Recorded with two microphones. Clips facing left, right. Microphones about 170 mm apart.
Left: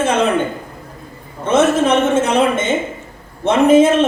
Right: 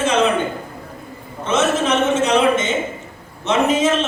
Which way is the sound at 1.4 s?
55° left (ahead or behind).